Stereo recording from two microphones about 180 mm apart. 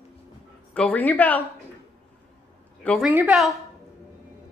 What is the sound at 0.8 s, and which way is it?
Speech, 10° left (ahead or behind).